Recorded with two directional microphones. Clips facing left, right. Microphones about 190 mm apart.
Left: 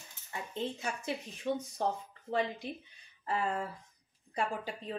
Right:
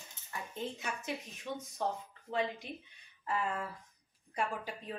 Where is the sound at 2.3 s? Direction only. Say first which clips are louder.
Left 2 dB; 35° left (ahead or behind).